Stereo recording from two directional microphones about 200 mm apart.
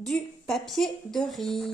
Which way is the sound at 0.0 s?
Centre (ahead or behind).